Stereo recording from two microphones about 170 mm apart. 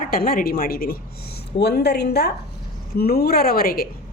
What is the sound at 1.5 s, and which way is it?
A woman's voice, 75° left (ahead or behind).